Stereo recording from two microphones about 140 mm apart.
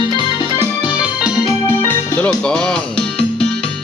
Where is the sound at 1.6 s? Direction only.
15° left (ahead or behind).